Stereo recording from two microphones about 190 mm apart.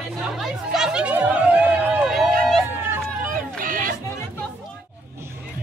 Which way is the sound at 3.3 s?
45° right (ahead or behind).